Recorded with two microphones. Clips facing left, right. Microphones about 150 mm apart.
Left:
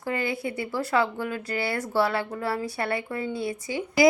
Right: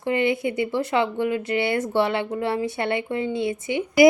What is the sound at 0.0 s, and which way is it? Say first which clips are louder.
A woman's voice: right 6 dB; 20° right (ahead or behind).